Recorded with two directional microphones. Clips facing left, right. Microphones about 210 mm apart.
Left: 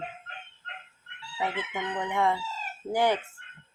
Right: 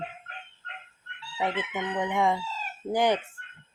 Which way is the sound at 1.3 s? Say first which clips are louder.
Right 2 dB; 15° right (ahead or behind).